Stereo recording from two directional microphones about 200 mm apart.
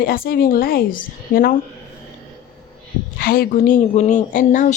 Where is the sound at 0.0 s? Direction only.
45° left (ahead or behind).